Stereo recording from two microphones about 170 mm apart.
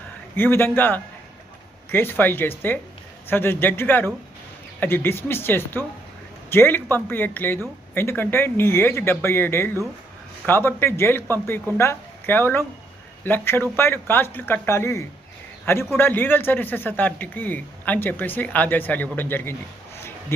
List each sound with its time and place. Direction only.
0.3 s a woman's voice: 10° left (ahead or behind)